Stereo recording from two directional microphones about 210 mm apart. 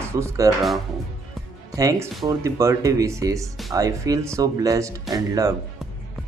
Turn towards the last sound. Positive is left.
turn(degrees=-15)  # may be behind; listen again after turning